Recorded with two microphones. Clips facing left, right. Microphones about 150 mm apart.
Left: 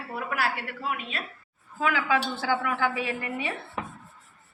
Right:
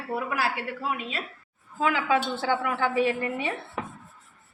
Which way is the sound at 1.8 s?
25° right (ahead or behind).